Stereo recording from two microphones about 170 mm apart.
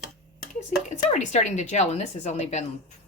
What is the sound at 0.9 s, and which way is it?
A woman's voice, 45° left (ahead or behind).